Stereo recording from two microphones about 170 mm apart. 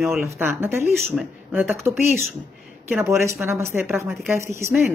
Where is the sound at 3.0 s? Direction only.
15° right (ahead or behind).